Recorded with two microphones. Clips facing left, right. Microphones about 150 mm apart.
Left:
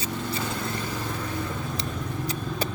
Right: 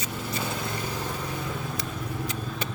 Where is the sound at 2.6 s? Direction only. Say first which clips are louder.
Left 6 dB; 35° left (ahead or behind).